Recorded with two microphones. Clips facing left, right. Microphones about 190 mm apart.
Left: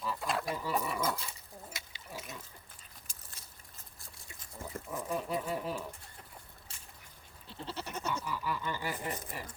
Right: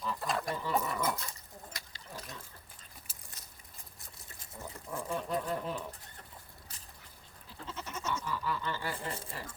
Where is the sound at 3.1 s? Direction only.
5° right (ahead or behind).